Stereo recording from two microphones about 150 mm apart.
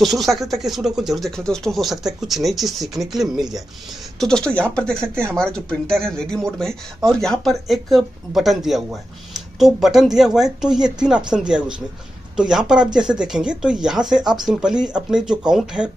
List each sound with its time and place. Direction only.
0.0 s speech: centre (ahead or behind)